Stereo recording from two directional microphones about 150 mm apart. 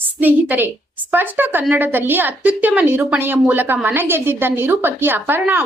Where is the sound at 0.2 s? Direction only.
10° right (ahead or behind).